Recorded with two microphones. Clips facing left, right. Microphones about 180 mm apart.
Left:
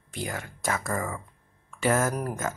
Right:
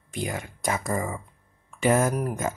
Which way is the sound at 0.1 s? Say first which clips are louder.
Right 3 dB; 15° right (ahead or behind).